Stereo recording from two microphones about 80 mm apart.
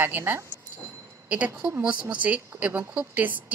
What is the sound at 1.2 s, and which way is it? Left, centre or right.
Speech, centre.